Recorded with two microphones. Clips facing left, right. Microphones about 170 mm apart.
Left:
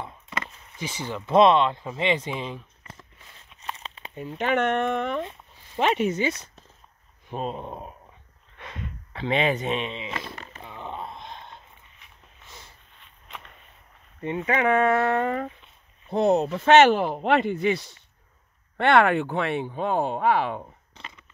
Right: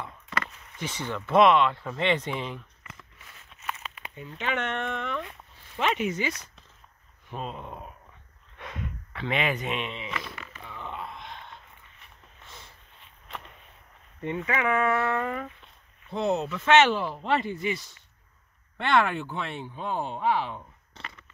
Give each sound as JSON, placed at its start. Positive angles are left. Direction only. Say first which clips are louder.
{"t": 0.0, "sound": "chop", "louder": "even", "side_deg": 20}
{"t": 0.7, "sound": "speech", "louder": "left 1 dB", "side_deg": 10}
{"t": 1.3, "sound": "speech", "louder": "left 2 dB", "side_deg": 25}
{"t": 2.8, "sound": "a sound", "louder": "left 2 dB", "side_deg": 35}
{"t": 3.6, "sound": "crumpling", "louder": "even", "side_deg": 30}
{"t": 4.4, "sound": "speech", "louder": "left 7 dB", "side_deg": 45}
{"t": 7.2, "sound": "speech", "louder": "left 5 dB", "side_deg": 35}
{"t": 8.5, "sound": "snort", "louder": "right 1 dB", "side_deg": -5}
{"t": 9.1, "sound": "speech", "louder": "left 5 dB", "side_deg": 30}
{"t": 10.6, "sound": "a sound", "louder": "left 2 dB", "side_deg": 25}
{"t": 14.4, "sound": "speech", "louder": "left 5 dB", "side_deg": 35}
{"t": 21.0, "sound": "a sound", "louder": "right 1 dB", "side_deg": 20}